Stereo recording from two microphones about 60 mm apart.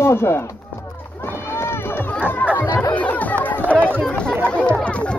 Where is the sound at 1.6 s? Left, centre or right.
Left.